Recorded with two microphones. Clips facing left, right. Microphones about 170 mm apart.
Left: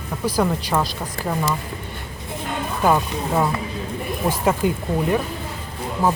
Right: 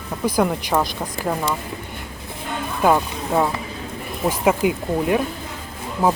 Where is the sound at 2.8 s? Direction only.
10° right (ahead or behind).